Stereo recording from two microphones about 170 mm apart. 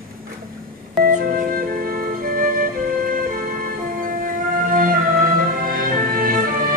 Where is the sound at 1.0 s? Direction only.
55° right (ahead or behind).